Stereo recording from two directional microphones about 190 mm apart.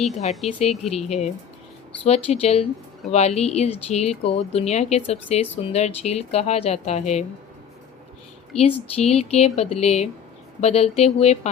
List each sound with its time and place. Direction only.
0.4 s speech: 35° left (ahead or behind)
8.5 s speech: 35° left (ahead or behind)